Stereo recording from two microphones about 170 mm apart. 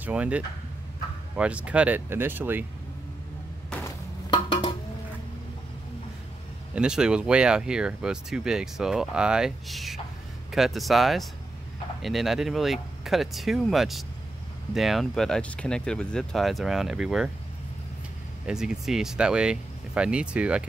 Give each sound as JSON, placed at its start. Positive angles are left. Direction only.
{"t": 0.0, "sound": "speech", "side_deg": -10}
{"t": 3.7, "sound": "a sound", "side_deg": 5}
{"t": 4.3, "sound": "dishes", "side_deg": 25}
{"t": 6.7, "sound": "speech", "side_deg": -5}
{"t": 18.4, "sound": "speech", "side_deg": -5}